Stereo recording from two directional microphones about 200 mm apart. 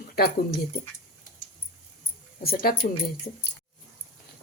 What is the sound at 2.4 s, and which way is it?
Speech, 50° left (ahead or behind).